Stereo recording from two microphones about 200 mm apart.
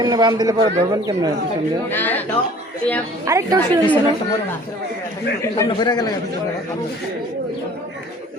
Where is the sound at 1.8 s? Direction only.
10° left (ahead or behind).